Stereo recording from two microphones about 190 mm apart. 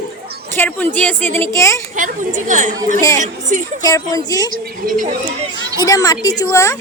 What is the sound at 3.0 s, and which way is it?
Speech, 15° left (ahead or behind).